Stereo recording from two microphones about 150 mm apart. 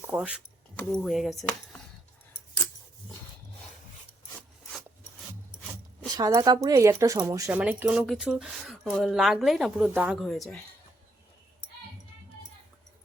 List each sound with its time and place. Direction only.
0.0 s speech: 10° right (ahead or behind)
0.8 s speech: 5° left (ahead or behind)
6.1 s speech: 25° right (ahead or behind)
7.6 s speech: 10° right (ahead or behind)